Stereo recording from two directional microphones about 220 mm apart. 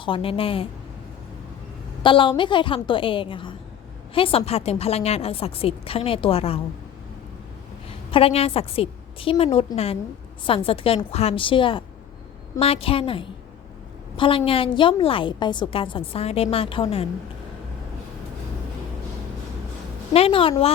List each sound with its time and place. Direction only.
0.0 s a woman's voice: 25° left (ahead or behind)
2.0 s a woman's voice: 20° left (ahead or behind)
7.9 s a woman's voice: 25° left (ahead or behind)
20.1 s a woman's voice: 25° left (ahead or behind)